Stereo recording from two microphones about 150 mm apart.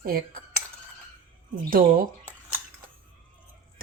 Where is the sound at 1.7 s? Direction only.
70° right (ahead or behind).